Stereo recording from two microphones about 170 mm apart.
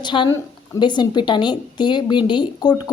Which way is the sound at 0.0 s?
30° left (ahead or behind).